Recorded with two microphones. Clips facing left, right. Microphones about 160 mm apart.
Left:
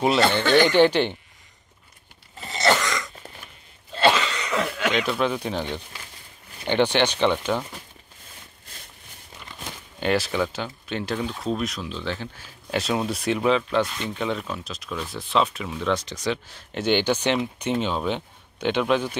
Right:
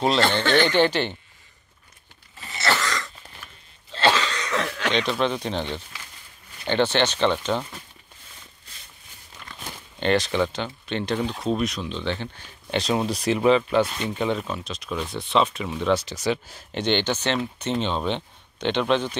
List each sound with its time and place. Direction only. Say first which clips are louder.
0.0 s speech: left 1 dB; 10° left (ahead or behind)
2.5 s a sound: left 3 dB; 20° left (ahead or behind)
4.0 s cough: left 1 dB; 10° left (ahead or behind)
6.6 s speech: left 1 dB; 15° left (ahead or behind)
9.5 s speech: even; 10° left (ahead or behind)
16.7 s speech: left 2 dB; 10° left (ahead or behind)